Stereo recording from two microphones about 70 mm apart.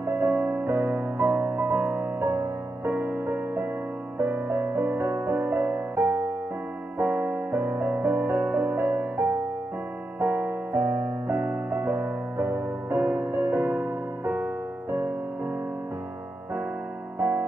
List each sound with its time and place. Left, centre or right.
0.0 s music: right
0.3 s music: centre
0.7 s music: right
7.2 s music: right
7.5 s music: right
17.2 s music: right